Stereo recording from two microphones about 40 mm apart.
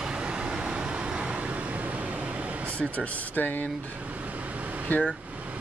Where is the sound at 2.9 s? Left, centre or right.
Left.